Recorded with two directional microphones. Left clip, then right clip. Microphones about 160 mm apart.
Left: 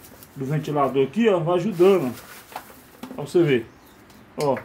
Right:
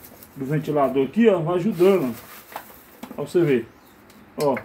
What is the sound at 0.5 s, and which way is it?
A man's voice, 45° left (ahead or behind).